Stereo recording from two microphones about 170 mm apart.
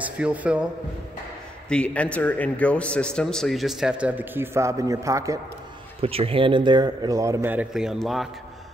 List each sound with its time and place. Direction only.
0.0 s a man's voice: 10° right (ahead or behind)
1.7 s a man's voice: 5° left (ahead or behind); by 5.4 s 20° right (ahead or behind)
5.9 s a man's voice: 35° right (ahead or behind); by 8.3 s centre (ahead or behind)